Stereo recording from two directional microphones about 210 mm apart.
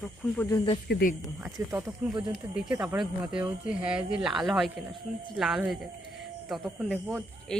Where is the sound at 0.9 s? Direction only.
50° left (ahead or behind).